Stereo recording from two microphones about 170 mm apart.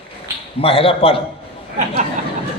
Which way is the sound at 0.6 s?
35° left (ahead or behind).